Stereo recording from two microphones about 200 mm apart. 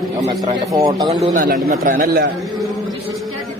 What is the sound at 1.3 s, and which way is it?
Speech, 45° right (ahead or behind).